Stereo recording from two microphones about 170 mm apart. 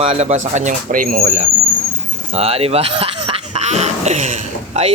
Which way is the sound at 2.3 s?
35° right (ahead or behind).